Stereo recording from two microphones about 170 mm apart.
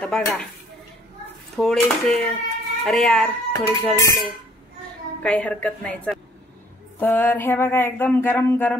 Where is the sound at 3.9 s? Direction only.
15° left (ahead or behind).